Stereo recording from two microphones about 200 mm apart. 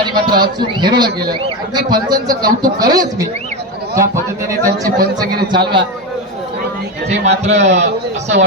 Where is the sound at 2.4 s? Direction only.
45° right (ahead or behind).